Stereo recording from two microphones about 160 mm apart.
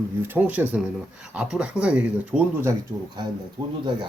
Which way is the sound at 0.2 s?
10° right (ahead or behind).